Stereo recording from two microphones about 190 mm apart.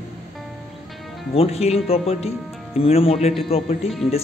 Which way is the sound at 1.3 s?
30° left (ahead or behind).